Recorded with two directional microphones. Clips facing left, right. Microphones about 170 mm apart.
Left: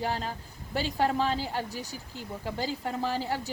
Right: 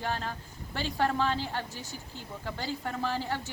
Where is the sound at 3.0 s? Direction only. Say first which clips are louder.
Left 2 dB; 40° left (ahead or behind).